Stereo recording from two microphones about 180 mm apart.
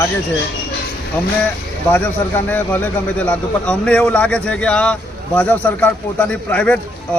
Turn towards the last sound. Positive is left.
turn(degrees=10)  # may be behind; listen again after turning